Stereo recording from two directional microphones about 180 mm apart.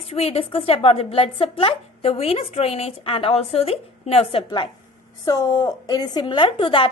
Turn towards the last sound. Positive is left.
turn(degrees=30)  # may be behind; listen again after turning